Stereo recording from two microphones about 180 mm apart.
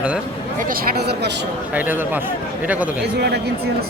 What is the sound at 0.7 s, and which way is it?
Speech, 65° right (ahead or behind).